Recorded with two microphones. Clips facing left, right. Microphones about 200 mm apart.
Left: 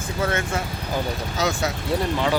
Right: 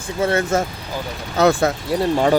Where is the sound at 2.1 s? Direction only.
45° right (ahead or behind).